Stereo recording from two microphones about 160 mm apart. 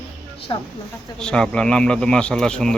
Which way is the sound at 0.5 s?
30° left (ahead or behind).